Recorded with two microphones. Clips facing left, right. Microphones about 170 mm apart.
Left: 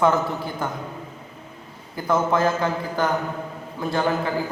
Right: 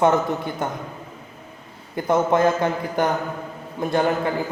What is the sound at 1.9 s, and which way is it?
A man's voice, 25° right (ahead or behind).